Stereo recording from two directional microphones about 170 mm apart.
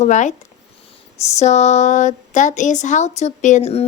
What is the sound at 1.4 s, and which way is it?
A child's voice, 40° left (ahead or behind).